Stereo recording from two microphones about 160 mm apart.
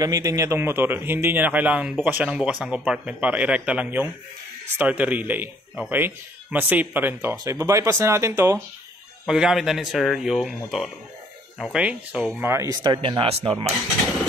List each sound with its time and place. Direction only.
0.0 s speech: 20° right (ahead or behind)
9.2 s speech: 5° right (ahead or behind); by 13.7 s 35° right (ahead or behind)